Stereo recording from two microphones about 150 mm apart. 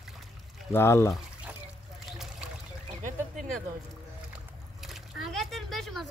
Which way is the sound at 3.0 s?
60° right (ahead or behind).